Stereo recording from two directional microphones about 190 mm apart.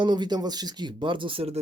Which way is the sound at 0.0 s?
20° right (ahead or behind).